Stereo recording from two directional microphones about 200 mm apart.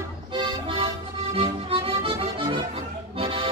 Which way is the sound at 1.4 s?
25° right (ahead or behind).